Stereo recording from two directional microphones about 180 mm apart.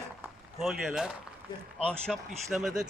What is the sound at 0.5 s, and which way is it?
Speech, centre (ahead or behind).